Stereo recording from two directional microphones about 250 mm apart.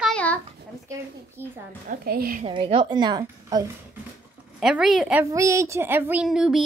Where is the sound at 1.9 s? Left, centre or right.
Right.